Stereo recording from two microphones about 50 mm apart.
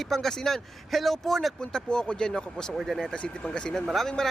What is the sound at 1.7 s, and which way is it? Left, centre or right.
Speech, centre.